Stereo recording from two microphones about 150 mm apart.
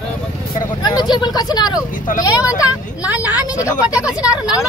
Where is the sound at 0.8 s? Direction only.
30° left (ahead or behind).